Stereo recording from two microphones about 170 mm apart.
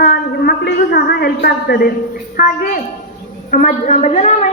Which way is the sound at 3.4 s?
45° left (ahead or behind).